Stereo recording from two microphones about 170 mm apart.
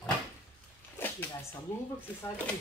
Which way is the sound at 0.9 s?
10° left (ahead or behind).